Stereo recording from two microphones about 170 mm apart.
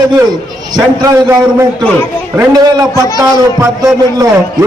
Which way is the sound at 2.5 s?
20° right (ahead or behind).